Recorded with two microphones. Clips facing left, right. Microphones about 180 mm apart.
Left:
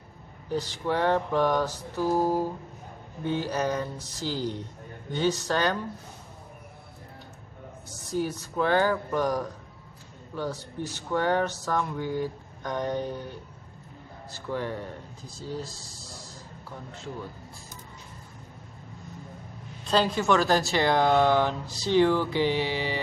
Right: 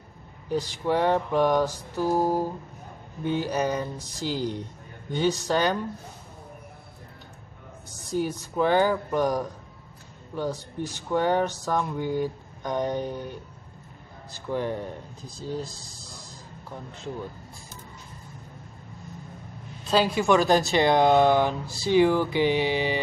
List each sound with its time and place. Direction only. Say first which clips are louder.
0.5 s speech: right 3 dB; 15° right (ahead or behind)
8.2 s a man's voice: right 2 dB; 15° right (ahead or behind)
19.8 s speech: right 2 dB; 5° right (ahead or behind)